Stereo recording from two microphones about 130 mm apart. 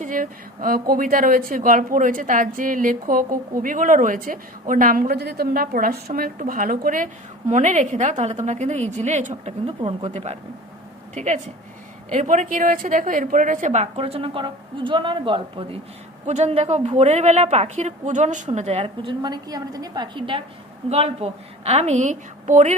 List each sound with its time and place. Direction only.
0.0 s a woman's voice: 90° right; by 10.1 s 55° right (ahead or behind)
11.1 s speech: 70° right (ahead or behind)
13.9 s a woman's voice: 50° right (ahead or behind)
16.2 s a woman's voice: 60° right (ahead or behind)
19.2 s a woman's voice: 30° right (ahead or behind)
20.9 s a woman's voice: 50° right (ahead or behind); by 22.7 s 70° right (ahead or behind)